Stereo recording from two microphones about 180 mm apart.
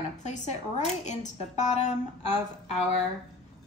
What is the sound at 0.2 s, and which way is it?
A woman's voice, 40° left (ahead or behind).